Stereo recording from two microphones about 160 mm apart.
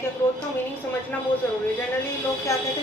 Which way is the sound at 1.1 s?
10° left (ahead or behind).